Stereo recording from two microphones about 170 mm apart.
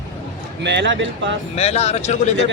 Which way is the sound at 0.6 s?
90° right.